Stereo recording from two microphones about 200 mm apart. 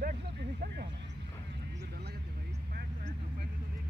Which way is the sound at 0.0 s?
45° right (ahead or behind).